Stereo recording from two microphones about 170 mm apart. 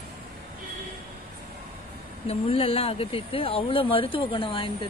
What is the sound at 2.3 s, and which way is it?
Speech, 35° left (ahead or behind).